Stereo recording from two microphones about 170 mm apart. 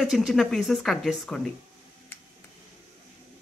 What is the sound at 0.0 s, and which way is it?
Speech, centre (ahead or behind).